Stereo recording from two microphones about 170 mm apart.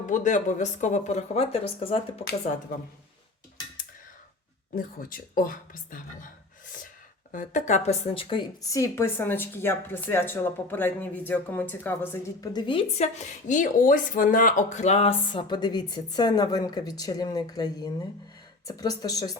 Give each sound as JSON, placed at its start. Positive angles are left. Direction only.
{"t": 0.0, "sound": "speech", "side_deg": 45}
{"t": 4.7, "sound": "speech", "side_deg": 55}
{"t": 7.3, "sound": "speech", "side_deg": 50}
{"t": 12.5, "sound": "speech", "side_deg": 30}
{"t": 13.0, "sound": "speech", "side_deg": 45}